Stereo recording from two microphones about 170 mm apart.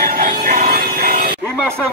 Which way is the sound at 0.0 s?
55° right (ahead or behind).